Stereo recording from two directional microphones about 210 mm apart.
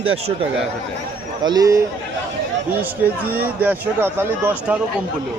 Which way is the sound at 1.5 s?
15° right (ahead or behind).